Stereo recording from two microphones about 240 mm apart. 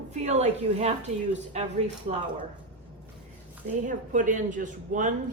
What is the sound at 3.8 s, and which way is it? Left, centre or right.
Speech, right.